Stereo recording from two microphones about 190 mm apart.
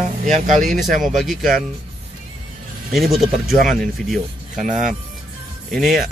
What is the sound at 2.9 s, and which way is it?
A man's voice, centre (ahead or behind).